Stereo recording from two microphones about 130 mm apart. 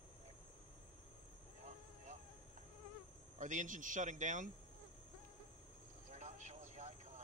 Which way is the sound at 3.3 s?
75° right (ahead or behind).